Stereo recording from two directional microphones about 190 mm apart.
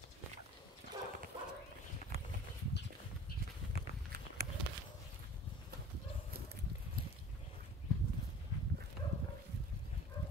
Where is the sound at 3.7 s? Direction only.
55° right (ahead or behind).